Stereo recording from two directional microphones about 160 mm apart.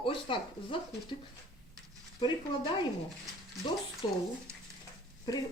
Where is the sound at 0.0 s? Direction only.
35° left (ahead or behind).